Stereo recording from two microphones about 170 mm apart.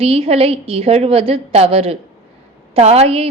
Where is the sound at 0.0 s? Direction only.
35° right (ahead or behind).